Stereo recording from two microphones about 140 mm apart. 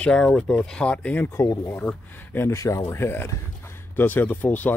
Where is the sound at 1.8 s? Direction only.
10° left (ahead or behind).